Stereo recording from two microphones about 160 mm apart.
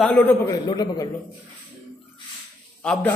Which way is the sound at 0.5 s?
25° left (ahead or behind).